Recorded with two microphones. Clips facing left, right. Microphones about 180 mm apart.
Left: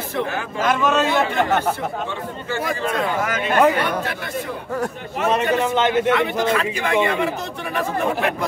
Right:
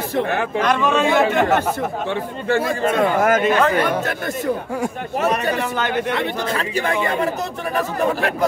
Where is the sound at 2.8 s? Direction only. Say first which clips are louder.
Right 5 dB; 50° right (ahead or behind).